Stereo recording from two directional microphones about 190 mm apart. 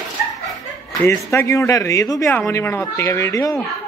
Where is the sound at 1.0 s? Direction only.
15° left (ahead or behind).